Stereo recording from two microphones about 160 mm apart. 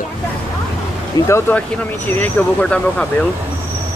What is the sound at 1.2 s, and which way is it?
Speech, 15° left (ahead or behind).